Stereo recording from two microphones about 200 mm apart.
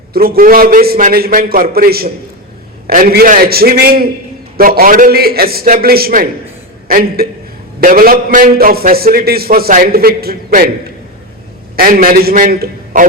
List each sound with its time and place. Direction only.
0.1 s a man's voice: 50° right (ahead or behind)
11.8 s a man's voice: 45° right (ahead or behind)